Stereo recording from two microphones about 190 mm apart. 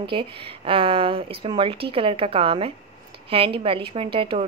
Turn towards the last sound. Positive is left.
turn(degrees=-25)  # may be behind; listen again after turning